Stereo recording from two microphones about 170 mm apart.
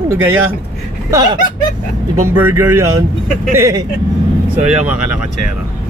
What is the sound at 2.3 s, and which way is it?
A man's voice, 15° right (ahead or behind).